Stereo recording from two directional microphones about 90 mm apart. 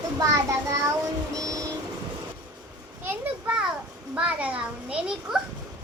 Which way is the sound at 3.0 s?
15° right (ahead or behind).